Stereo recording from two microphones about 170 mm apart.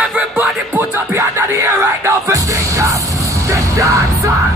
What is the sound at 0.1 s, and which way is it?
Music, 10° right (ahead or behind).